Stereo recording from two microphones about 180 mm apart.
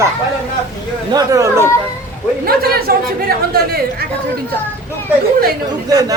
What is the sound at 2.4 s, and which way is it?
Speech, 55° right (ahead or behind).